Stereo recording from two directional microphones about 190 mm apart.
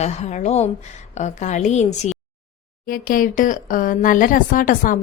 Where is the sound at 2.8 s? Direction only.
50° left (ahead or behind).